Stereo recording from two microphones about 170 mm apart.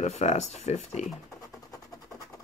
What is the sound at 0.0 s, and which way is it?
Speech, 40° left (ahead or behind).